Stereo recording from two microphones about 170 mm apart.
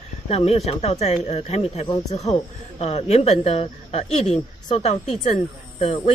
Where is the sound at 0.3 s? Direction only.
40° left (ahead or behind).